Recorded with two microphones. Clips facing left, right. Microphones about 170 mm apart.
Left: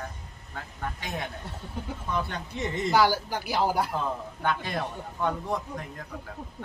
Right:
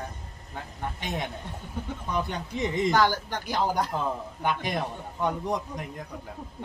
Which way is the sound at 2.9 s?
10° left (ahead or behind).